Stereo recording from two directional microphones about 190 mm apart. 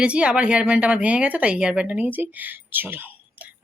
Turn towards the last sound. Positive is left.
turn(degrees=-10)  # may be behind; listen again after turning